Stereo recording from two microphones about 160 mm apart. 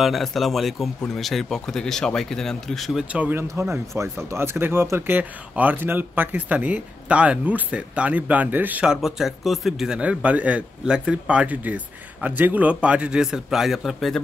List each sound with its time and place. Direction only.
0.0 s speech: centre (ahead or behind)